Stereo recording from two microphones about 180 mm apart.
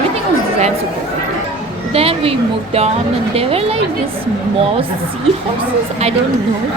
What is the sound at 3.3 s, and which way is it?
Speech, 35° right (ahead or behind).